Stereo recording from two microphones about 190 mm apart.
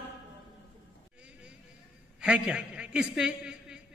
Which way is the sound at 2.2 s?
5° right (ahead or behind).